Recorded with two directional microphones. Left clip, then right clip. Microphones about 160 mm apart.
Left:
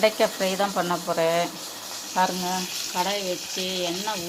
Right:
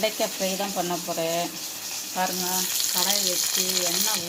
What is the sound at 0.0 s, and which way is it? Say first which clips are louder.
Speech: left 4 dB; 5° left (ahead or behind).